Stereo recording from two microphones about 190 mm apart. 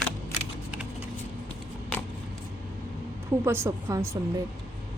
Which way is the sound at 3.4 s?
15° right (ahead or behind).